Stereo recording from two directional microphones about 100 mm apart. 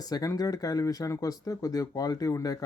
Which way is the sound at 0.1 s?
40° left (ahead or behind).